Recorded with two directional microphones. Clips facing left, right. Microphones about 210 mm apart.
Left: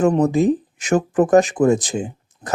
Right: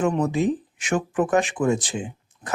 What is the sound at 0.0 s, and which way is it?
Speech, 40° left (ahead or behind).